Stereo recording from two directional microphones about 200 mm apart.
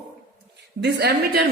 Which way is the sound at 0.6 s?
55° right (ahead or behind).